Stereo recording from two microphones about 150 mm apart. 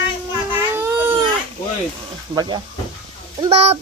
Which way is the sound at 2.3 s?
30° right (ahead or behind).